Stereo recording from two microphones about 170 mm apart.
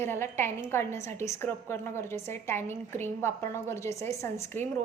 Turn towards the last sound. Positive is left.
turn(degrees=15)  # may be behind; listen again after turning